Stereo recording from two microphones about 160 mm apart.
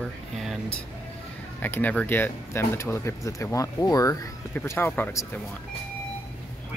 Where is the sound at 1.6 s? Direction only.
10° left (ahead or behind).